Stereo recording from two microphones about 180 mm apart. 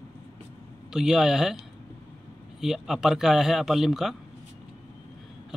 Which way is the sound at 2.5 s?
Centre (ahead or behind).